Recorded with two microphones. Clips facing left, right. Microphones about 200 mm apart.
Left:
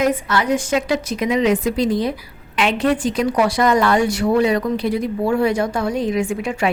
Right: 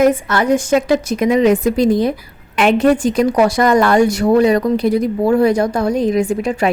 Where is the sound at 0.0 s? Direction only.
50° right (ahead or behind).